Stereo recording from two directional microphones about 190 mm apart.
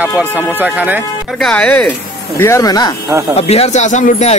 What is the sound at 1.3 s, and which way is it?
Speech, 5° left (ahead or behind).